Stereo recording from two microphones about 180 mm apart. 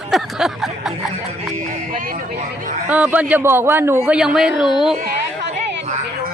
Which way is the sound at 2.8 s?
5° right (ahead or behind).